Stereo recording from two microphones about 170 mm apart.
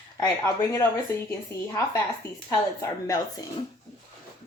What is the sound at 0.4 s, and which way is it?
Speech, 15° left (ahead or behind).